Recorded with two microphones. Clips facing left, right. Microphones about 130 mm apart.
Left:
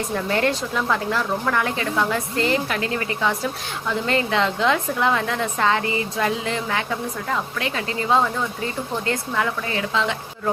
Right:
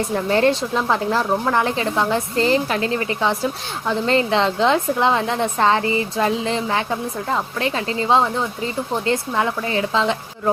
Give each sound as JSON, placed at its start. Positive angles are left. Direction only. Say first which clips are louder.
{"t": 0.1, "sound": "a woman's voice", "louder": "right 4 dB", "side_deg": -30}